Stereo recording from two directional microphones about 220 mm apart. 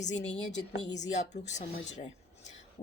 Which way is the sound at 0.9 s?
30° left (ahead or behind).